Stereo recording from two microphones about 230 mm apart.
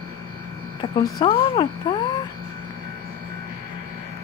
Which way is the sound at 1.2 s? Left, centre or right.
Left.